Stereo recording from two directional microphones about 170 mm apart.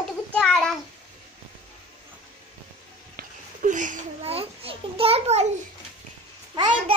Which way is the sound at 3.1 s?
50° right (ahead or behind).